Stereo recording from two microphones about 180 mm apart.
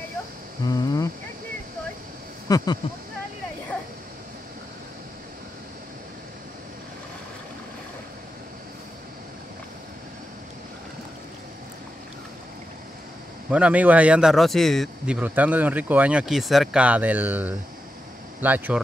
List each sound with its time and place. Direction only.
0.7 s cricket: 20° left (ahead or behind)
2.4 s speech: 20° left (ahead or behind)
13.5 s a man's voice: 5° right (ahead or behind)
15.1 s speech: 10° right (ahead or behind)